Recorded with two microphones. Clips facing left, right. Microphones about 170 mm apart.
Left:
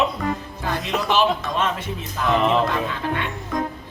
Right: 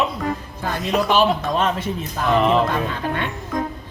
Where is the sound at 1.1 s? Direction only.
40° right (ahead or behind).